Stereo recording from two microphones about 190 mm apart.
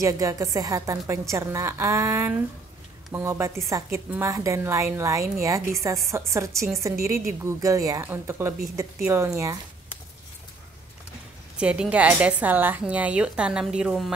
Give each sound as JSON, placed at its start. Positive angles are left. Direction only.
{"t": 0.0, "sound": "a woman's voice", "side_deg": -15}
{"t": 11.5, "sound": "a woman's voice", "side_deg": -5}